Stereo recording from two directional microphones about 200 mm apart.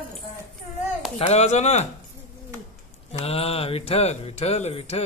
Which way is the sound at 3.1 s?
30° left (ahead or behind).